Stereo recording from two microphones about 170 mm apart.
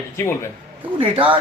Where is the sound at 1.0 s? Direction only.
30° right (ahead or behind).